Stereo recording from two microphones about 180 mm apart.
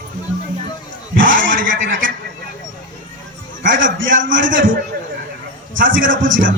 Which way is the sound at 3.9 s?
90° right.